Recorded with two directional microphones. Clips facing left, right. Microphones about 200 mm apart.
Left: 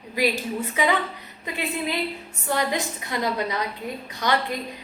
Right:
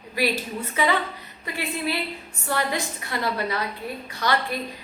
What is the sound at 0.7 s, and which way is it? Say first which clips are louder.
Speech: even; 15° left (ahead or behind).